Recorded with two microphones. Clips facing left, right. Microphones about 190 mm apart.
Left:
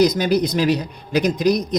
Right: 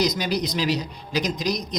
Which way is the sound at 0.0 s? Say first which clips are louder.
Left 7 dB; 50° left (ahead or behind).